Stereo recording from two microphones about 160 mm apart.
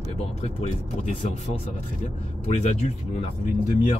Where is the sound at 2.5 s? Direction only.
45° left (ahead or behind).